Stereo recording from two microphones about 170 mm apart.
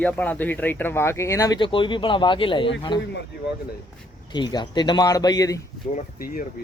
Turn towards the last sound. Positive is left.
turn(degrees=50)  # may be behind; listen again after turning